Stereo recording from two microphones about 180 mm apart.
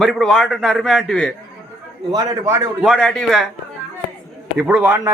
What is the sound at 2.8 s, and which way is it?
Speech, centre (ahead or behind).